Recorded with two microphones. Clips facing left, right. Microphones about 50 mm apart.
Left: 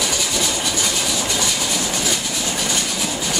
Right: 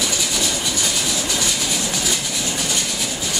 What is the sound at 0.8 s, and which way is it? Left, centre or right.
Vehicle, centre.